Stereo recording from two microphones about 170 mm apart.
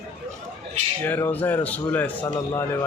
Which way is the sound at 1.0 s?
10° left (ahead or behind).